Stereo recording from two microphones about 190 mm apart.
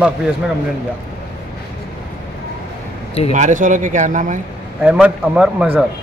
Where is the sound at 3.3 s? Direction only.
40° right (ahead or behind).